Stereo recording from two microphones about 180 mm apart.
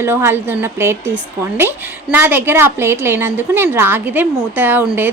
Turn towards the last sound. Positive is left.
turn(degrees=-10)  # may be behind; listen again after turning